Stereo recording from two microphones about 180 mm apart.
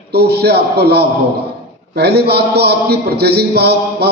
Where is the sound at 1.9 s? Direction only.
65° right (ahead or behind).